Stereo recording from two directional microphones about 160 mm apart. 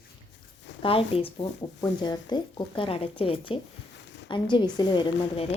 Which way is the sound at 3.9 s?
90° left.